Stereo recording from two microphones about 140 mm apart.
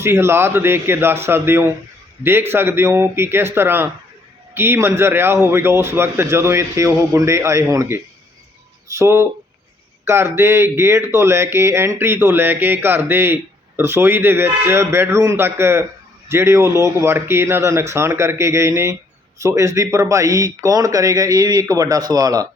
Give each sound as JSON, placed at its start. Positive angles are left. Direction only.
{"t": 0.0, "sound": "speech", "side_deg": -20}